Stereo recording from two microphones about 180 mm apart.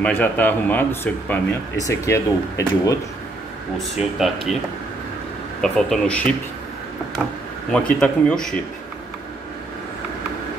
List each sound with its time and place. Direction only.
0.0 s speech: 10° left (ahead or behind)
4.0 s speech: centre (ahead or behind)
5.6 s speech: 5° left (ahead or behind)
7.7 s speech: 5° left (ahead or behind)